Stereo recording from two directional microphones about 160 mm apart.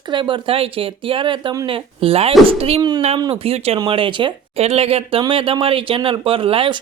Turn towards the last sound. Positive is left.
turn(degrees=-35)  # may be behind; listen again after turning